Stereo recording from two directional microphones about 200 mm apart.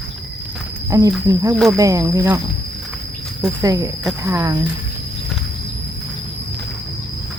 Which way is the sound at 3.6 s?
15° right (ahead or behind).